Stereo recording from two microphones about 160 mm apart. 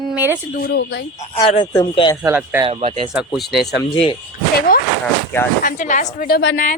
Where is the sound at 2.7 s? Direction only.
35° right (ahead or behind).